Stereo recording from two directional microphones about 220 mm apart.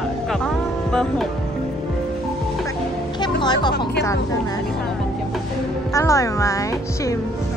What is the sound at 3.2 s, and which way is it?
Speech, 20° left (ahead or behind).